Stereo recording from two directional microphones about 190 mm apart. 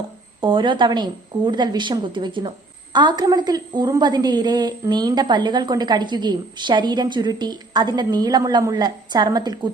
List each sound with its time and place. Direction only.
0.4 s a woman's voice: 25° right (ahead or behind)